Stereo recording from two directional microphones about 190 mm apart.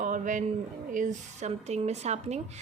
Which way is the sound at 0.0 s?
40° right (ahead or behind).